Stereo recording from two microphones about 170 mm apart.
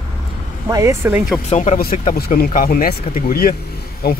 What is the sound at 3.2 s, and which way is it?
Speech, 60° left (ahead or behind).